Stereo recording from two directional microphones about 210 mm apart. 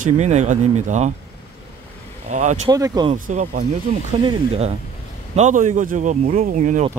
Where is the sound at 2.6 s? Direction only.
20° right (ahead or behind).